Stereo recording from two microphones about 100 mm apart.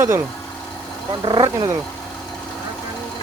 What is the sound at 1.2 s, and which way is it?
Speech, 55° right (ahead or behind).